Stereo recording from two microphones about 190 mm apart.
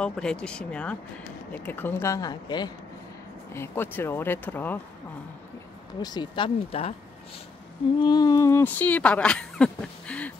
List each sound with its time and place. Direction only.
0.0 s speech: 5° left (ahead or behind)
5.9 s speech: 20° left (ahead or behind)
8.0 s speech: 20° left (ahead or behind)